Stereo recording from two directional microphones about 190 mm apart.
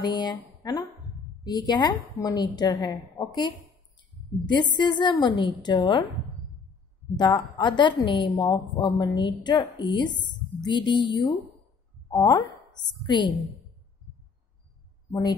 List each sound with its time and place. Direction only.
0.0 s a woman's voice: 20° left (ahead or behind)
7.2 s a woman's voice: 25° left (ahead or behind)
15.0 s speech: 15° left (ahead or behind)